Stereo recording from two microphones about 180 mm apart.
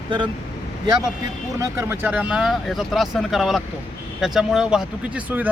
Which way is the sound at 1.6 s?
10° right (ahead or behind).